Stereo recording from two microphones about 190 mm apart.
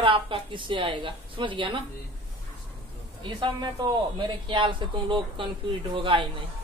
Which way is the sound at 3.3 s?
25° right (ahead or behind).